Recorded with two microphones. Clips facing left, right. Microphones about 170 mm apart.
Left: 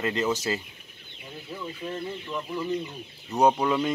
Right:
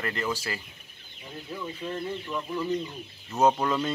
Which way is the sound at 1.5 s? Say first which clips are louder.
Even; 10° left (ahead or behind).